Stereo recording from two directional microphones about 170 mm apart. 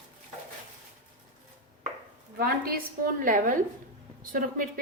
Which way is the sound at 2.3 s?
60° right (ahead or behind).